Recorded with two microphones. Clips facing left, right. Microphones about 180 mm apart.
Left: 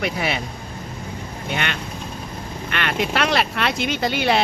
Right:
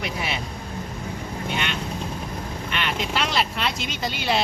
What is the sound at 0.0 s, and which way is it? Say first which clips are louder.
Speech: left 5 dB; 65° left (ahead or behind).